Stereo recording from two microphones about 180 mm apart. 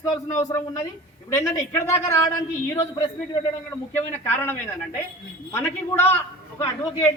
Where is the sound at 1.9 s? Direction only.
15° left (ahead or behind).